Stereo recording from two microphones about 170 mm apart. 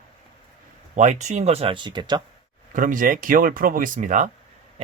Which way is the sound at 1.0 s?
45° right (ahead or behind).